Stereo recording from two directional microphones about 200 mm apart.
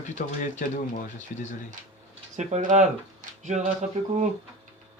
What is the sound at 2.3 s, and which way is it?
Speech, 35° right (ahead or behind).